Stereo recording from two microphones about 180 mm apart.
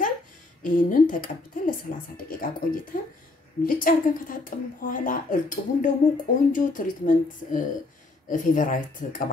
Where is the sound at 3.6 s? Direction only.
50° left (ahead or behind).